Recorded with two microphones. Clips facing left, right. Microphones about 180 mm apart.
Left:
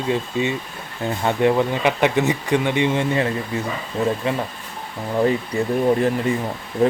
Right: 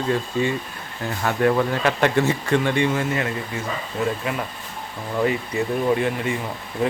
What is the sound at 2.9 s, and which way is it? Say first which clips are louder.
Speech: left 3 dB; 30° left (ahead or behind).